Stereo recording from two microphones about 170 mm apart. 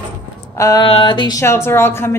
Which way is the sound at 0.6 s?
20° left (ahead or behind).